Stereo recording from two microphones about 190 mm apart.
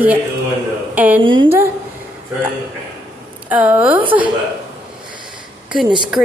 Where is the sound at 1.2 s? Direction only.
25° right (ahead or behind).